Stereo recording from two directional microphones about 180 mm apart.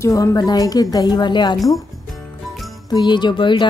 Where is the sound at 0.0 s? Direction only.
20° left (ahead or behind).